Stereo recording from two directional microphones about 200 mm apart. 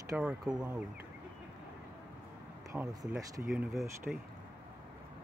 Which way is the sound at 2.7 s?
15° right (ahead or behind).